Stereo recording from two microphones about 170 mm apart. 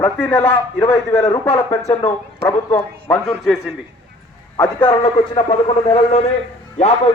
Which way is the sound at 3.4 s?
5° right (ahead or behind).